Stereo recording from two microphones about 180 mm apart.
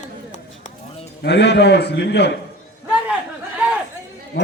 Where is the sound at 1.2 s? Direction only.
70° left (ahead or behind).